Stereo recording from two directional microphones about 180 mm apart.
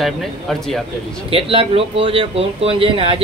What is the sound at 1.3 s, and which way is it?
Speech, 30° right (ahead or behind).